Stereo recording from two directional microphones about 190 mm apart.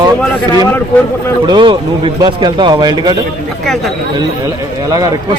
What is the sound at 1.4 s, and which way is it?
A man's voice, 25° right (ahead or behind).